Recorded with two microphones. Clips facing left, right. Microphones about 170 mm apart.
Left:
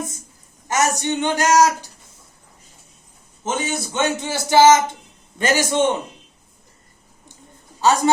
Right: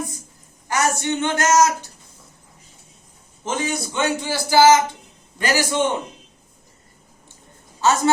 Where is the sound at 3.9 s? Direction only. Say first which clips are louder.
Left 1 dB; 25° left (ahead or behind).